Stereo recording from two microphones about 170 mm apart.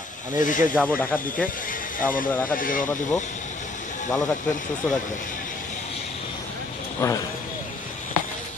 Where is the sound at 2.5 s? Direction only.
55° left (ahead or behind).